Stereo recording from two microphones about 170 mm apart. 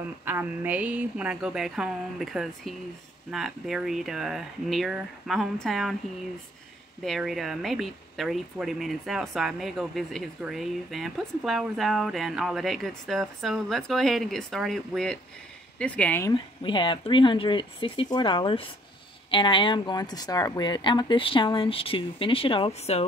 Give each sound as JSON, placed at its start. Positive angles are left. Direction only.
{"t": 0.2, "sound": "speech", "side_deg": -10}
{"t": 7.1, "sound": "speech", "side_deg": 0}
{"t": 16.3, "sound": "speech", "side_deg": 30}